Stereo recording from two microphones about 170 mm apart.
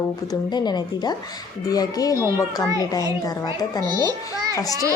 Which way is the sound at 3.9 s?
20° right (ahead or behind).